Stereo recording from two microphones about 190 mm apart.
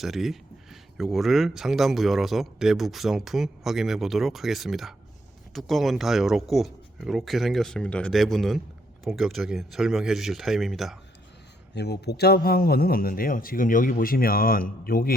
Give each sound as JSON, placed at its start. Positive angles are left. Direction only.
{"t": 0.0, "sound": "speech", "side_deg": 0}
{"t": 11.7, "sound": "speech", "side_deg": 60}